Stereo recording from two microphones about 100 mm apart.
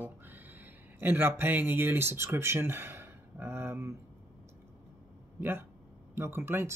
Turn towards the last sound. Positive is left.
turn(degrees=-25)  # may be behind; listen again after turning